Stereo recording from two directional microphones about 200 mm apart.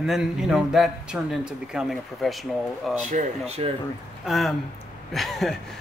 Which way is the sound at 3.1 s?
35° right (ahead or behind).